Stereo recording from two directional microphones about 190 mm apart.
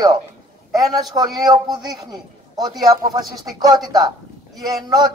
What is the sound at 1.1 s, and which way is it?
Speech, 20° right (ahead or behind).